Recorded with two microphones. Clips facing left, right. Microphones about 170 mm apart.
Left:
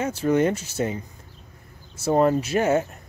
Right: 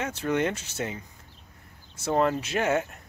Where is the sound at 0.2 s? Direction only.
35° left (ahead or behind).